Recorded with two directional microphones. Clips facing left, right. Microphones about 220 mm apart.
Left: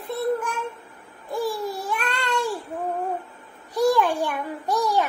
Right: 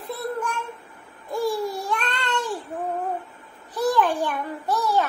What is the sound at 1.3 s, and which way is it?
Babbling, centre (ahead or behind).